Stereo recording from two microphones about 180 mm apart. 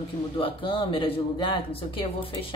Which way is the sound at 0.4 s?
30° left (ahead or behind).